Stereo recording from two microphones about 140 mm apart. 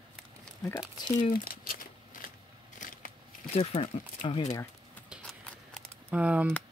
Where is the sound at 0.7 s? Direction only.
30° left (ahead or behind).